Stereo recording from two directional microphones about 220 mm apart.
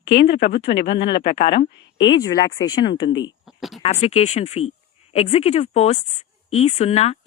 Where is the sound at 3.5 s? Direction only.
Centre (ahead or behind).